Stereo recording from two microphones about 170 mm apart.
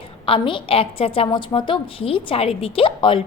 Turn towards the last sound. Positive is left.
turn(degrees=30)  # may be behind; listen again after turning